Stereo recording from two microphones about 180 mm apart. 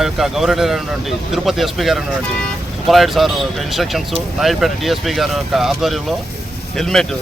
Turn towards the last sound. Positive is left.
turn(degrees=0)  # may be behind; listen again after turning